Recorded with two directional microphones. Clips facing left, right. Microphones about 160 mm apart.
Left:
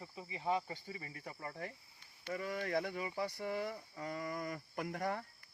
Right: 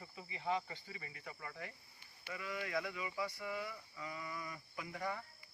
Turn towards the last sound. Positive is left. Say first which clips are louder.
# left 4 dB
turn(degrees=50)  # may be behind; listen again after turning